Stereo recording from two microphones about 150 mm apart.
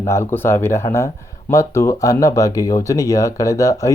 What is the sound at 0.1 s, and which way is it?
Speech, 15° left (ahead or behind).